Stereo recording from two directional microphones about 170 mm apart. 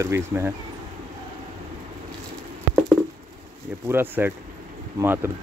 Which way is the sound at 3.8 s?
15° right (ahead or behind).